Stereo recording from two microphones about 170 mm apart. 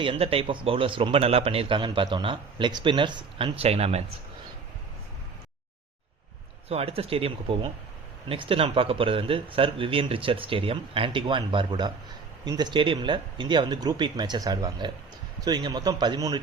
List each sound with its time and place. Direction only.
0.0 s speech: 35° right (ahead or behind)
6.7 s speech: 35° right (ahead or behind)